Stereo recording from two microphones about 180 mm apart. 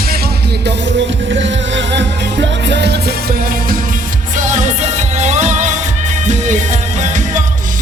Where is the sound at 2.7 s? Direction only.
70° right (ahead or behind); by 3.8 s 55° right (ahead or behind).